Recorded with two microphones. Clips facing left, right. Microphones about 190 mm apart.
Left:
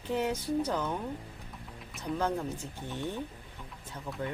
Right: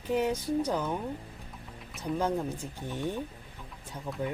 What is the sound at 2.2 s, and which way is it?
Speech, 10° right (ahead or behind).